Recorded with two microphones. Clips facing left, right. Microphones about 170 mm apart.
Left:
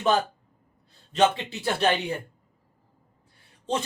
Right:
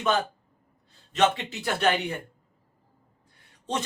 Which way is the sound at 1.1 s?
30° left (ahead or behind).